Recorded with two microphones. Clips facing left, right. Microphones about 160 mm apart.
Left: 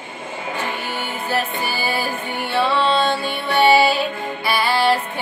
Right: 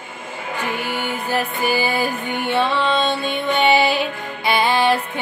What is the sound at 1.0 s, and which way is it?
Music, 15° right (ahead or behind).